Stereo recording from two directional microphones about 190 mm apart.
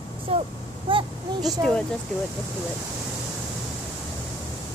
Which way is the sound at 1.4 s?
Centre (ahead or behind).